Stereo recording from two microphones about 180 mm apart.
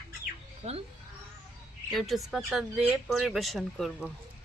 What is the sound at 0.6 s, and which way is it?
Speech, 40° right (ahead or behind).